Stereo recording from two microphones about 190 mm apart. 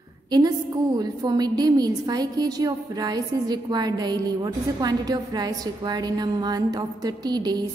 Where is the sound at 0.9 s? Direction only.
20° right (ahead or behind).